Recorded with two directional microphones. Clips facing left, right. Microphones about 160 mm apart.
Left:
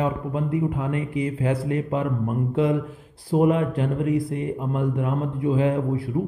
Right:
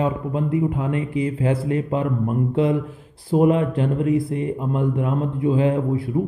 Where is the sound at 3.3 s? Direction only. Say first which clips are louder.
Right 2 dB; 25° right (ahead or behind).